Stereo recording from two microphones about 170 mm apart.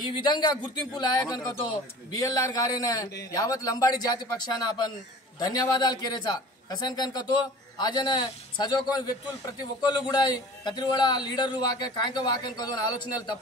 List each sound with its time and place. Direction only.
0.1 s a man's voice: 25° left (ahead or behind)
9.8 s a man's voice: 25° left (ahead or behind)